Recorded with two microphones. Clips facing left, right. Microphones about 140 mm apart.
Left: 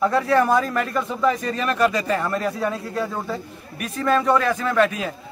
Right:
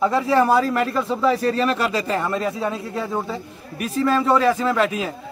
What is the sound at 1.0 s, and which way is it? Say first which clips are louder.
Speech: right 3 dB; 30° right (ahead or behind).